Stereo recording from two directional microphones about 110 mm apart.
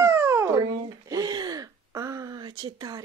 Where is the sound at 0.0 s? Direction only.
20° right (ahead or behind).